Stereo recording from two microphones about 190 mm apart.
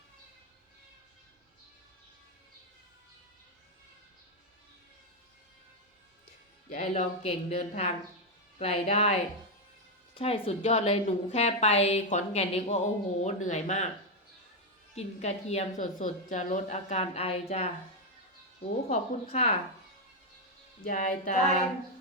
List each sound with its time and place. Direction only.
6.8 s a woman's voice: 35° left (ahead or behind)
14.9 s a woman's voice: 35° left (ahead or behind)
18.9 s a woman's voice: 35° left (ahead or behind)
20.8 s a woman's voice: 40° left (ahead or behind)